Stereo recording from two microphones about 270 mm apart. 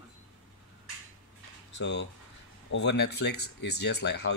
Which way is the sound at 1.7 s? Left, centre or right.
Left.